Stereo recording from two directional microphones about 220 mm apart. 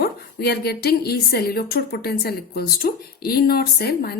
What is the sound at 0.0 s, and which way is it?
Speech, 45° left (ahead or behind).